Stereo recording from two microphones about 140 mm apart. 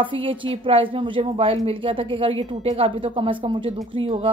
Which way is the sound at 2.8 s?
40° right (ahead or behind).